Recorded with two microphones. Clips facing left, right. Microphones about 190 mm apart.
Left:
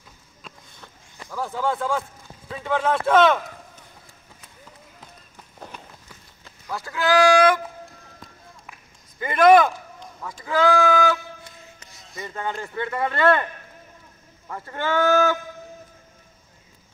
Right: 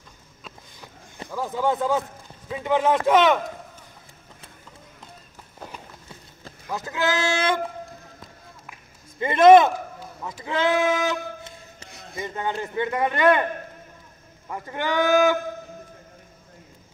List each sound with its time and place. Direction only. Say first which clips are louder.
1.3 s a man's voice: right 2 dB; 15° right (ahead or behind)
6.7 s speech: left 3 dB; 20° right (ahead or behind)
9.2 s speech: right 2 dB; 25° right (ahead or behind)
10.4 s a sound: left 3 dB; 25° right (ahead or behind)
11.9 s a sound: right 6 dB; 60° right (ahead or behind)
12.2 s a man's voice: right 2 dB; 20° right (ahead or behind)
14.5 s a man's voice: left 1 dB; 15° right (ahead or behind)